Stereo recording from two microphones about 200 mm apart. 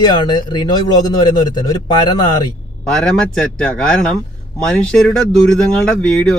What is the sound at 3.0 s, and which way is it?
Speech, 5° left (ahead or behind).